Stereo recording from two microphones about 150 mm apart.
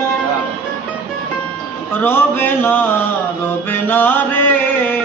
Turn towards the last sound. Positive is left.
turn(degrees=15)  # may be behind; listen again after turning